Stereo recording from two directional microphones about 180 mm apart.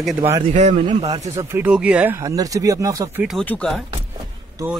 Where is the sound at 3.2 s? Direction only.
Centre (ahead or behind).